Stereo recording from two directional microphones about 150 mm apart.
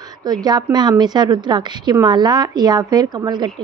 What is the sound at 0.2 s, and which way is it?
A woman's voice, 25° right (ahead or behind).